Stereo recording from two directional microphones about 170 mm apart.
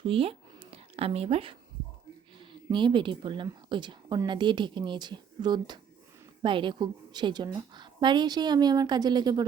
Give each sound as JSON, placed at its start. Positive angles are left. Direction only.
{"t": 0.0, "sound": "speech", "side_deg": -35}